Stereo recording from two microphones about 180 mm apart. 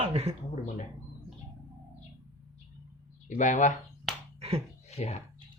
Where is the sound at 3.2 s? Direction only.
45° left (ahead or behind).